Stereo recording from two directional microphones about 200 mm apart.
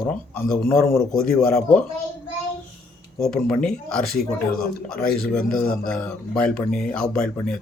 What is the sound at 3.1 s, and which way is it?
Speech, centre (ahead or behind).